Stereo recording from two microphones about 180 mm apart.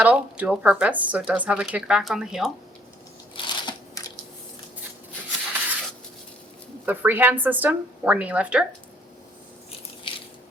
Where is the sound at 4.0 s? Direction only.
20° left (ahead or behind).